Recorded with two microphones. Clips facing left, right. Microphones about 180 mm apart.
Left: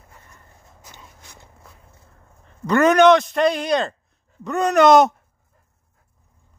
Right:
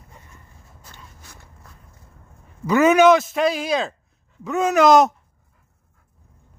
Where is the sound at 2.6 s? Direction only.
5° right (ahead or behind).